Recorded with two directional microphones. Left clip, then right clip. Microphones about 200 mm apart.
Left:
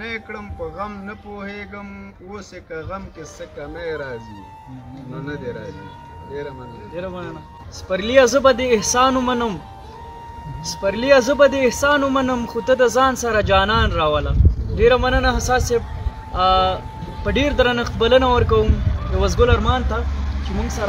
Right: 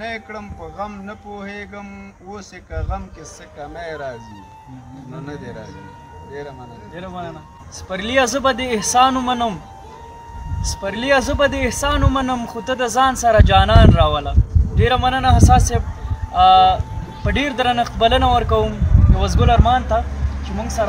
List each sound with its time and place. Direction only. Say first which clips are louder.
0.0 s a man's voice: right 1 dB; 15° right (ahead or behind)
5.1 s a man's voice: left 4 dB; 15° right (ahead or behind)
7.0 s a man's voice: left 1 dB; 15° right (ahead or behind)
10.8 s a man's voice: left 3 dB; 15° right (ahead or behind)